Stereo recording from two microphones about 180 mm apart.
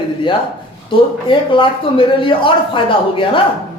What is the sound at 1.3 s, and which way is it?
A man's voice, 30° left (ahead or behind).